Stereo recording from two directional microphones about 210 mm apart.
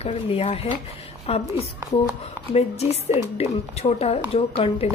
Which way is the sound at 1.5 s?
10° right (ahead or behind).